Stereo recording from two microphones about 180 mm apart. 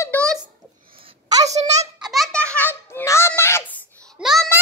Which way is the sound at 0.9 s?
30° right (ahead or behind).